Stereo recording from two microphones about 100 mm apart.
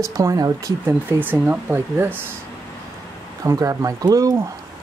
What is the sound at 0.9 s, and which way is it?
Speech, 20° right (ahead or behind).